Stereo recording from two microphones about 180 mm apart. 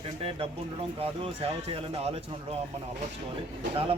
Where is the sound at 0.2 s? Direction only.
30° right (ahead or behind).